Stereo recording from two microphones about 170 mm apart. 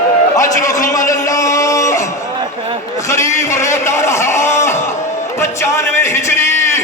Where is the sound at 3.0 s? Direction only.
15° left (ahead or behind).